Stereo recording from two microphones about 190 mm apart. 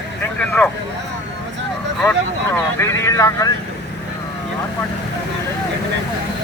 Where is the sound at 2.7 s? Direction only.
15° left (ahead or behind).